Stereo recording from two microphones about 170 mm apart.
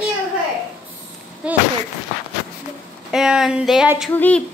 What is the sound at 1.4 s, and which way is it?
Speech, 5° right (ahead or behind).